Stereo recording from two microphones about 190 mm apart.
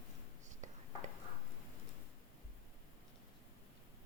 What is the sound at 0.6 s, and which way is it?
Whispering, 40° right (ahead or behind).